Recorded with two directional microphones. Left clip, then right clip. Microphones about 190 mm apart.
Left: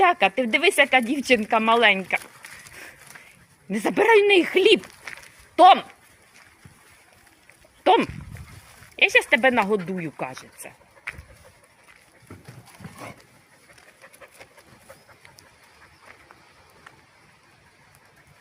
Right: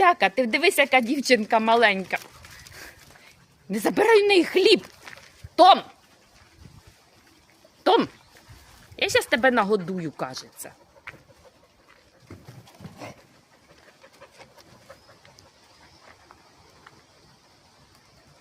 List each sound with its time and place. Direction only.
0.0 s speech: 5° right (ahead or behind)
2.6 s a sound: centre (ahead or behind)
3.7 s speech: centre (ahead or behind)
9.0 s speech: 10° right (ahead or behind)
11.1 s chicken: 70° left (ahead or behind)
12.8 s a sound: 15° right (ahead or behind)